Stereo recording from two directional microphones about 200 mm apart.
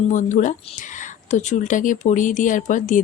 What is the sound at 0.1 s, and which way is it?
Speech, 40° left (ahead or behind).